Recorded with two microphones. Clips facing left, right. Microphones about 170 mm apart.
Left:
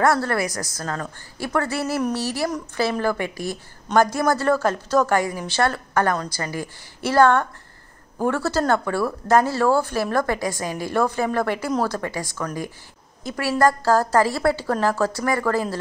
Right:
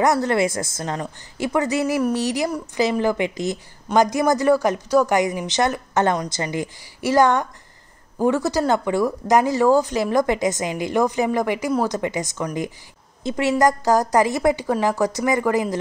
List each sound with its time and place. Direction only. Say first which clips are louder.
0.0 s a woman's voice: right 2 dB; 20° right (ahead or behind)